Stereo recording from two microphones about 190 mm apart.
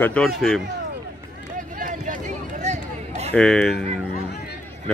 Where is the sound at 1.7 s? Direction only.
45° right (ahead or behind).